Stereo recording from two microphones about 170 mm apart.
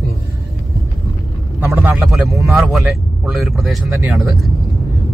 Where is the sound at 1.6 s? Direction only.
15° right (ahead or behind).